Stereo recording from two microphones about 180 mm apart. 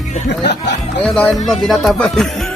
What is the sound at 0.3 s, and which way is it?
Music, 70° left (ahead or behind).